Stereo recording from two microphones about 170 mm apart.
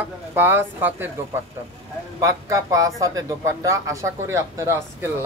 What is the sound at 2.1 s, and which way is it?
A man's voice, 20° right (ahead or behind).